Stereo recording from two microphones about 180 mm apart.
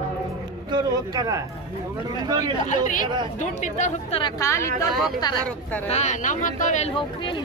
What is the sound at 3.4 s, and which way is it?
Speech, 40° left (ahead or behind).